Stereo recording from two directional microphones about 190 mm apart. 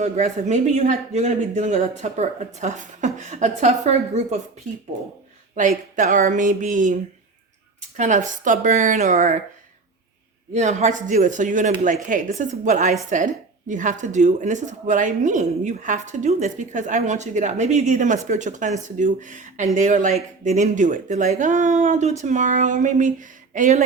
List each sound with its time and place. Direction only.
0.0 s speech: 40° right (ahead or behind)
5.5 s speech: 40° right (ahead or behind)
10.5 s speech: 40° right (ahead or behind)